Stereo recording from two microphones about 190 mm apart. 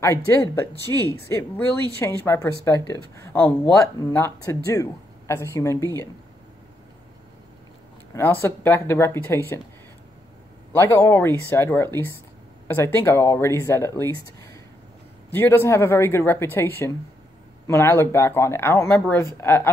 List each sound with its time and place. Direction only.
0.0 s speech: 15° left (ahead or behind)
8.1 s speech: 10° left (ahead or behind)
10.7 s speech: 15° left (ahead or behind)